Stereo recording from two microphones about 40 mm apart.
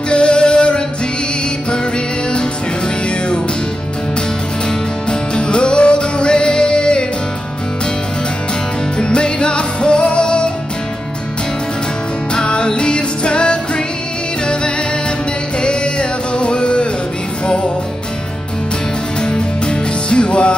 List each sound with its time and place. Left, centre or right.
0.1 s music: left
5.3 s music: left
8.9 s music: left
12.4 s music: left
15.6 s music: left
19.2 s music: left